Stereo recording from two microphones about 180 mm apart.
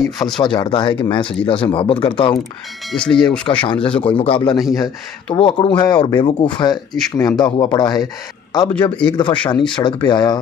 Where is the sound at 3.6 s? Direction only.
30° left (ahead or behind).